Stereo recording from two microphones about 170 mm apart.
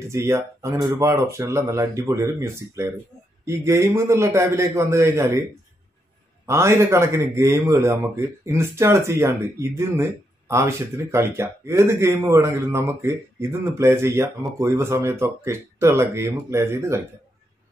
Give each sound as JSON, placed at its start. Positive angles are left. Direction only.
{"t": 0.1, "sound": "a man's voice", "side_deg": -15}
{"t": 6.4, "sound": "a man's voice", "side_deg": -15}